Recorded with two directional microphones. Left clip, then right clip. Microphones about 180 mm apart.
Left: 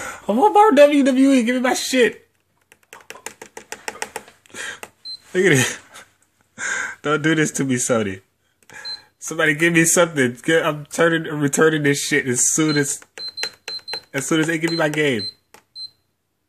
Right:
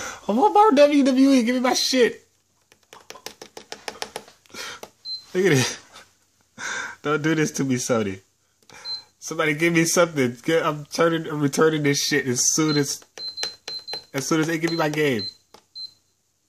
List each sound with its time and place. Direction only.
0.0 s speech: 5° right (ahead or behind)
3.6 s music: 15° right (ahead or behind)
4.5 s a sound: centre (ahead or behind)
6.5 s speech: 5° left (ahead or behind)
14.3 s speech: 5° right (ahead or behind)